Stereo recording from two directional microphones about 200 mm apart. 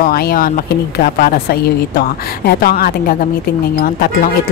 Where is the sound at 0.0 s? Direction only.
50° left (ahead or behind).